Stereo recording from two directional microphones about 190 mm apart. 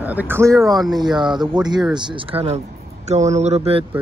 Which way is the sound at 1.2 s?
25° right (ahead or behind).